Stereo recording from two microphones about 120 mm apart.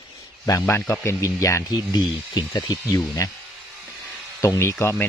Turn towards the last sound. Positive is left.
turn(degrees=20)  # may be behind; listen again after turning